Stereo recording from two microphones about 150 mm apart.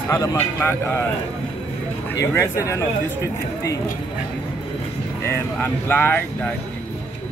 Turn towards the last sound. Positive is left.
turn(degrees=15)  # may be behind; listen again after turning